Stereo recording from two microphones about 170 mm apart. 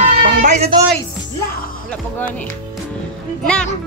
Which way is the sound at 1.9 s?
10° left (ahead or behind).